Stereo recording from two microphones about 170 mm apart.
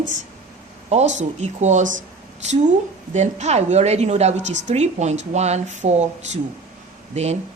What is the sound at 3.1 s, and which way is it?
A woman's voice, 45° right (ahead or behind).